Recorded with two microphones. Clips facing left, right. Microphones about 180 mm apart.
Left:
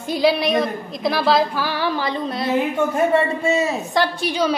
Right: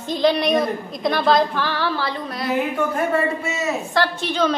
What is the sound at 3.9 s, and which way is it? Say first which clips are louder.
Speech: left 1 dB; 15° left (ahead or behind).